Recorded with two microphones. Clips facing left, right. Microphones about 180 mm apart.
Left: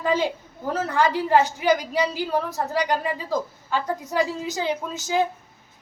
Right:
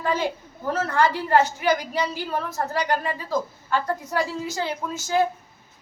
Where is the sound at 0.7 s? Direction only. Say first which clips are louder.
Even; 15° left (ahead or behind).